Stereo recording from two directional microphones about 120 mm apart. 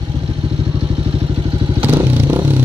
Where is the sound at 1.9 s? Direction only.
20° right (ahead or behind).